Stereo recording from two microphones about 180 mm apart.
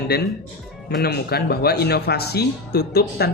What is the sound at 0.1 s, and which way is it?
Speech, 65° left (ahead or behind).